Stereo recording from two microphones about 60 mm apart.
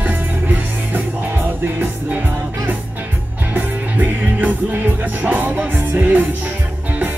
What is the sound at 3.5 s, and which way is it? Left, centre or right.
Music, right.